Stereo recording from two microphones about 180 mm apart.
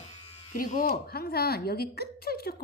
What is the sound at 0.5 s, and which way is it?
Speech, 45° left (ahead or behind).